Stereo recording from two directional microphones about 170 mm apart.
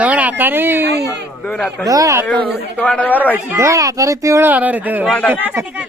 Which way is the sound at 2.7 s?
5° left (ahead or behind).